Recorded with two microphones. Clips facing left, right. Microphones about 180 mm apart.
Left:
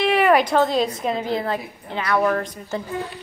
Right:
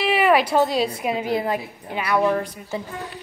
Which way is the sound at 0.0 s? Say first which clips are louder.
Left 1 dB; 5° right (ahead or behind).